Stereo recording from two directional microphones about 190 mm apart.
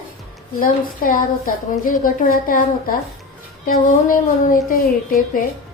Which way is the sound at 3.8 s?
45° left (ahead or behind).